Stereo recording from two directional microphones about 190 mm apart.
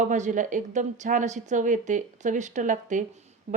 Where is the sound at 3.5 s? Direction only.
45° right (ahead or behind).